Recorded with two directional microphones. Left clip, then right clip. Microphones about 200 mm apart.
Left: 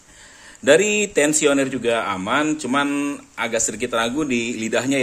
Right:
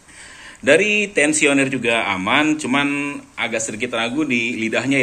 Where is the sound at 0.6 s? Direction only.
35° left (ahead or behind).